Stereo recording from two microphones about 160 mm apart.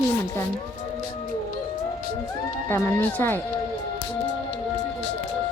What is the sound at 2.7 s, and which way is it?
Speech, 15° left (ahead or behind).